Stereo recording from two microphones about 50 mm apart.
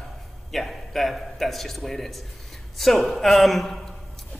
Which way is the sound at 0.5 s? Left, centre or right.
Centre.